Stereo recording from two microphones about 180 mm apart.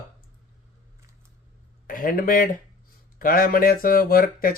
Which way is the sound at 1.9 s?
50° left (ahead or behind).